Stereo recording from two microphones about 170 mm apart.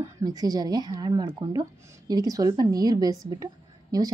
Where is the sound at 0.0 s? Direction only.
20° right (ahead or behind).